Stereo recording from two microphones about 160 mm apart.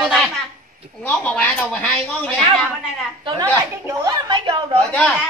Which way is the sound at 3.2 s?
25° right (ahead or behind).